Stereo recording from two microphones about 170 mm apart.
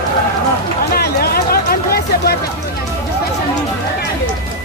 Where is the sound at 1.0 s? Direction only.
65° left (ahead or behind).